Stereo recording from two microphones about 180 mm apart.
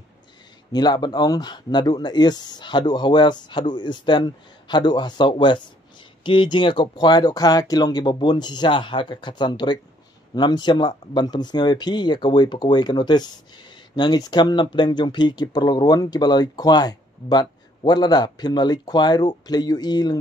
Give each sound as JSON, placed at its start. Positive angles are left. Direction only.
{"t": 0.7, "sound": "speech", "side_deg": 25}